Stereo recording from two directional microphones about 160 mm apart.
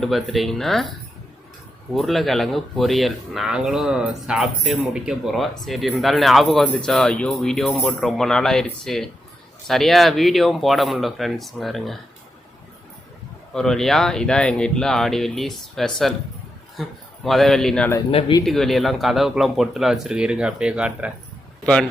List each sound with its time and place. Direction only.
0.0 s speech: centre (ahead or behind)
2.0 s speech: centre (ahead or behind)
13.5 s speech: 5° left (ahead or behind)
18.1 s speech: 35° left (ahead or behind)
18.4 s speech: centre (ahead or behind)
21.6 s speech: 5° left (ahead or behind)